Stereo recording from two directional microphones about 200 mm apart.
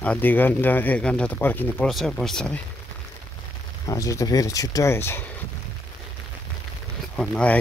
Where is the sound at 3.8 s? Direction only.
15° left (ahead or behind).